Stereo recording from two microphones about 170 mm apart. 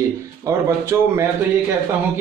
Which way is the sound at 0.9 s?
15° right (ahead or behind).